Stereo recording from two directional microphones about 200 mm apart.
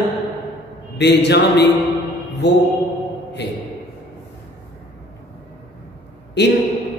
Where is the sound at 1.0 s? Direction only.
60° left (ahead or behind).